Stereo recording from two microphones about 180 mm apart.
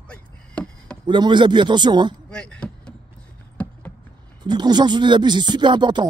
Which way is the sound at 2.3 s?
5° left (ahead or behind).